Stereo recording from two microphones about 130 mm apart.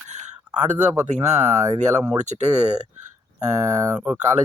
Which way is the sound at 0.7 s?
60° right (ahead or behind).